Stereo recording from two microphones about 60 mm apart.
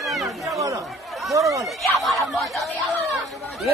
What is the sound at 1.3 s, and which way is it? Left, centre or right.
Speech, right.